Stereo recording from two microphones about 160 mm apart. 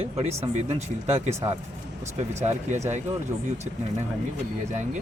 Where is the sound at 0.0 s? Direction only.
40° right (ahead or behind).